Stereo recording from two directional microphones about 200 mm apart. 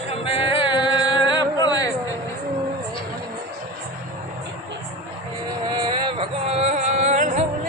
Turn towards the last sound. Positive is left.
turn(degrees=-35)  # may be behind; listen again after turning